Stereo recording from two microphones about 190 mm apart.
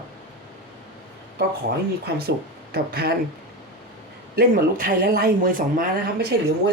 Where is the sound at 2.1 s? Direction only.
55° right (ahead or behind).